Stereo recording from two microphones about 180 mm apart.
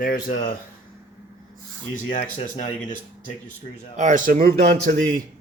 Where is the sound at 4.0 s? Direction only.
45° right (ahead or behind).